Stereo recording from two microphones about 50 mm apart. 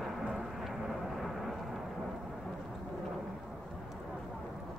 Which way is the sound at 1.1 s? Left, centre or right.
Centre.